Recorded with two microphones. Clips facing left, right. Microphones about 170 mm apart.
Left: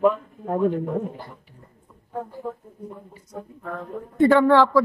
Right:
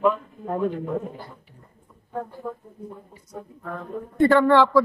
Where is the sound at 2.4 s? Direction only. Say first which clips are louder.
Left 1 dB; 25° left (ahead or behind).